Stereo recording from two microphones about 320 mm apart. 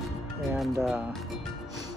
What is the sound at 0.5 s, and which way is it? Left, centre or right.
Speech, centre.